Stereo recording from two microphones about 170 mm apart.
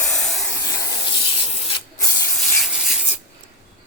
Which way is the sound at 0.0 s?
5° left (ahead or behind).